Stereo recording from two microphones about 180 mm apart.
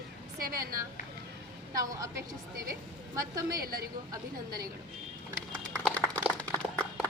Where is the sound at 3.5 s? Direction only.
55° right (ahead or behind).